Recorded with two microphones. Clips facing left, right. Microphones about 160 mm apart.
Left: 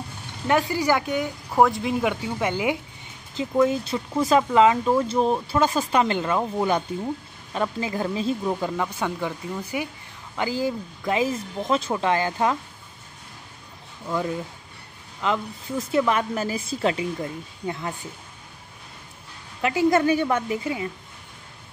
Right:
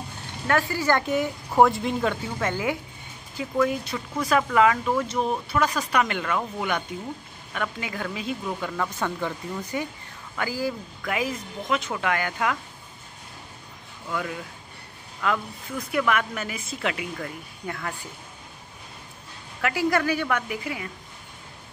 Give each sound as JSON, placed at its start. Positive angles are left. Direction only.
{"t": 0.5, "sound": "speech", "side_deg": 15}
{"t": 1.0, "sound": "speech", "side_deg": 0}
{"t": 2.0, "sound": "speech", "side_deg": 15}
{"t": 8.7, "sound": "speech", "side_deg": 10}
{"t": 10.3, "sound": "speech", "side_deg": 20}
{"t": 14.0, "sound": "speech", "side_deg": 25}
{"t": 19.6, "sound": "speech", "side_deg": 20}